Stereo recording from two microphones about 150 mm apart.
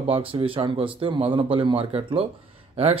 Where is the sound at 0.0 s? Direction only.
40° right (ahead or behind).